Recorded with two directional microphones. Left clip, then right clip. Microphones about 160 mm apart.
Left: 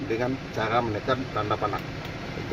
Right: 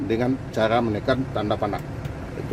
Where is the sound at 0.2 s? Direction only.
90° right.